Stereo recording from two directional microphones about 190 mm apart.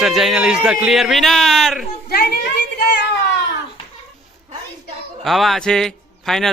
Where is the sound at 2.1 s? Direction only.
55° left (ahead or behind).